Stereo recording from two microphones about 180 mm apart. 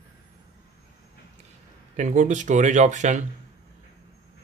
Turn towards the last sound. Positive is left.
turn(degrees=-40)  # may be behind; listen again after turning